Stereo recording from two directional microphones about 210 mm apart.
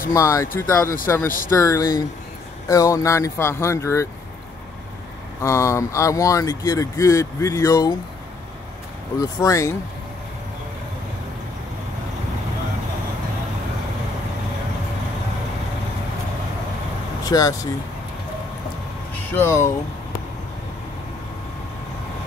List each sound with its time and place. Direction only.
0.1 s speech: 15° left (ahead or behind)
5.4 s speech: 15° left (ahead or behind)
9.2 s speech: 15° left (ahead or behind)
17.2 s speech: 15° left (ahead or behind)
19.3 s speech: 10° left (ahead or behind)